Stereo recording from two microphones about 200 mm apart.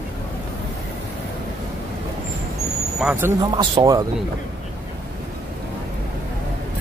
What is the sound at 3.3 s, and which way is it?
Speech, 20° right (ahead or behind).